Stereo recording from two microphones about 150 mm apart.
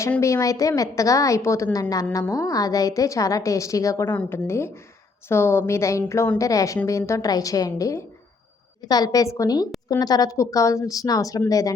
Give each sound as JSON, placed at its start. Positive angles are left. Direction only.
{"t": 0.2, "sound": "a woman's voice", "side_deg": 20}